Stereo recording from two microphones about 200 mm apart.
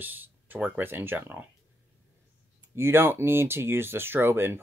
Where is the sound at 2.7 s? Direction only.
10° right (ahead or behind).